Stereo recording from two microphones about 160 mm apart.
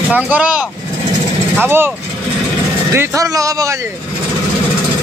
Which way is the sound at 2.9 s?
20° right (ahead or behind).